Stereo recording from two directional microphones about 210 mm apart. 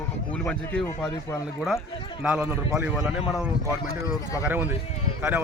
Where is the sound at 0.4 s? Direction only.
Centre (ahead or behind).